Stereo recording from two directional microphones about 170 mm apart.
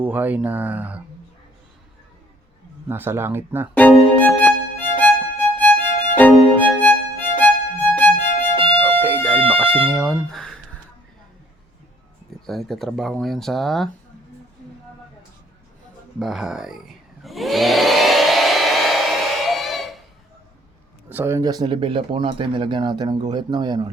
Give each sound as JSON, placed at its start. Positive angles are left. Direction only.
{"t": 0.0, "sound": "speech", "side_deg": -10}
{"t": 2.9, "sound": "speech", "side_deg": -15}
{"t": 3.8, "sound": "music", "side_deg": 10}
{"t": 9.0, "sound": "music", "side_deg": -10}
{"t": 9.4, "sound": "music", "side_deg": -30}
{"t": 9.9, "sound": "speech", "side_deg": 0}
{"t": 12.5, "sound": "speech", "side_deg": 0}
{"t": 16.1, "sound": "speech", "side_deg": 0}
{"t": 17.2, "sound": "hair dryer", "side_deg": 0}
{"t": 21.1, "sound": "speech", "side_deg": -10}